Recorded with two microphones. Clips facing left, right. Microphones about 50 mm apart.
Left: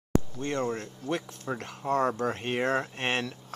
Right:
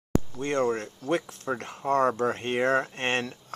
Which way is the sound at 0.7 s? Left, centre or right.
Right.